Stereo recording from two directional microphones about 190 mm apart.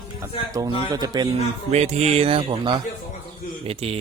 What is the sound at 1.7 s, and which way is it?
A man's voice, 35° right (ahead or behind).